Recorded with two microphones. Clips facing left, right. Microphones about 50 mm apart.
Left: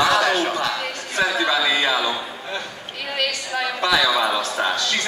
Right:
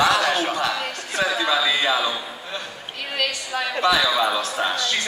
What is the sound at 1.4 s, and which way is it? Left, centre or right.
Speech, centre.